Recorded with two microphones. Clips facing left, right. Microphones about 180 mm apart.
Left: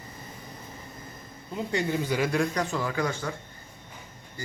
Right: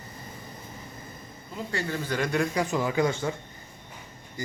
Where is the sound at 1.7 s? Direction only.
15° left (ahead or behind); by 2.6 s centre (ahead or behind).